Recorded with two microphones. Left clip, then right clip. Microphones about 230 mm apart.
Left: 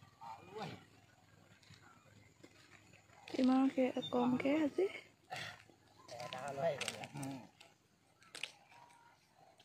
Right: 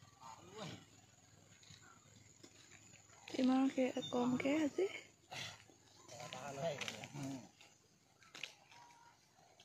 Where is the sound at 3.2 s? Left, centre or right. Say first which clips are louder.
Left 2 dB; left.